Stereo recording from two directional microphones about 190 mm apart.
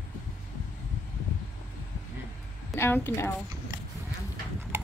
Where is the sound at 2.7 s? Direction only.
10° left (ahead or behind).